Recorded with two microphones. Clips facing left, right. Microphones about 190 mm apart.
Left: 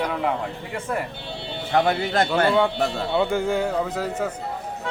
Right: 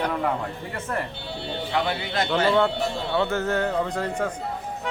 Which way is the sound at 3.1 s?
15° left (ahead or behind).